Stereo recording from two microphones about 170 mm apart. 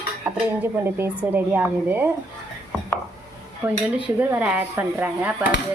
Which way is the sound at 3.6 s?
15° right (ahead or behind).